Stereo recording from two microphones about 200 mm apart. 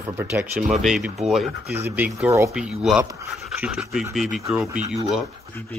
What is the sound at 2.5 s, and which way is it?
Speech, centre (ahead or behind).